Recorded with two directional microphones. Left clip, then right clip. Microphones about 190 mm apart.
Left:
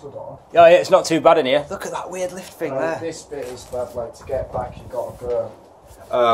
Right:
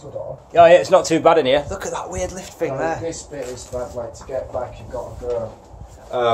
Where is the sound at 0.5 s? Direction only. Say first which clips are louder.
Even; 10° left (ahead or behind).